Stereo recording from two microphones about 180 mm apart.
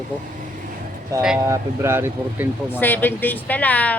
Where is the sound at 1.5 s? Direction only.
15° right (ahead or behind).